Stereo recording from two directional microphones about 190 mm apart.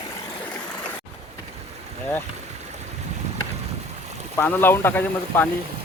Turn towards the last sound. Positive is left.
turn(degrees=10)  # may be behind; listen again after turning